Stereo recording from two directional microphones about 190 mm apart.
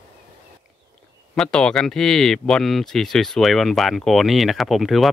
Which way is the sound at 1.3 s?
5° left (ahead or behind).